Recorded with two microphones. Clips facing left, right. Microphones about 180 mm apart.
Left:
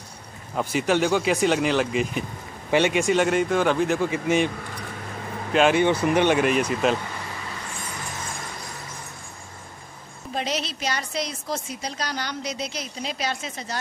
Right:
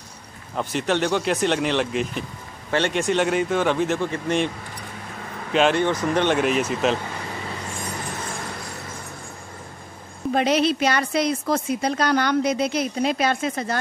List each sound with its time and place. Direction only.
0.6 s speech: 5° left (ahead or behind)
5.5 s speech: 5° left (ahead or behind)
10.3 s a woman's voice: 55° right (ahead or behind)